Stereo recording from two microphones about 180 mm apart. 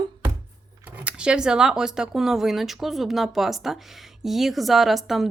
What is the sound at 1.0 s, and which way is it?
Speech, 5° right (ahead or behind).